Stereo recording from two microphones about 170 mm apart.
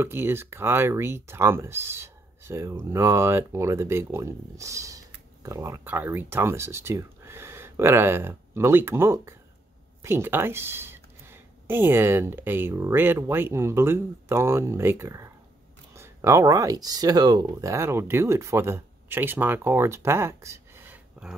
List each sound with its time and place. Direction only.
0.0 s speech: 15° right (ahead or behind)